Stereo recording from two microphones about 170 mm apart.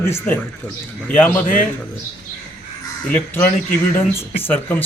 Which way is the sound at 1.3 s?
55° left (ahead or behind).